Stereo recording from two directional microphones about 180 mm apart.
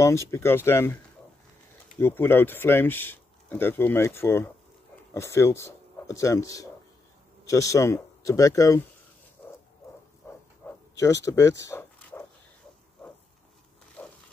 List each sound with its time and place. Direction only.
0.0 s speech: 15° left (ahead or behind)
2.0 s speech: 10° left (ahead or behind)
10.3 s a sound: 10° left (ahead or behind)
10.6 s bow-wow: 10° left (ahead or behind)
11.0 s speech: 20° left (ahead or behind)
14.0 s pig: 10° left (ahead or behind)